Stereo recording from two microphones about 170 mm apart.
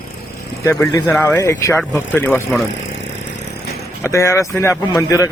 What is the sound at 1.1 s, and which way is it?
Speech, 5° left (ahead or behind).